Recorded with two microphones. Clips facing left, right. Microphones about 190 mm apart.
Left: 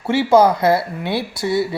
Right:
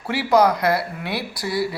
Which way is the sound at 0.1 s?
25° left (ahead or behind).